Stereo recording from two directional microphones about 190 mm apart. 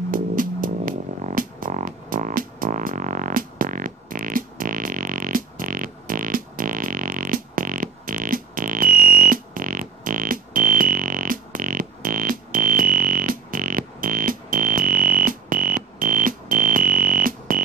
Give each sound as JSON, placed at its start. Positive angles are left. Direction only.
{"t": 0.1, "sound": "music", "side_deg": -45}